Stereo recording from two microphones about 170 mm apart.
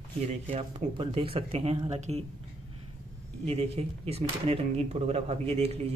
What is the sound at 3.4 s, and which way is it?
Speech, 35° right (ahead or behind).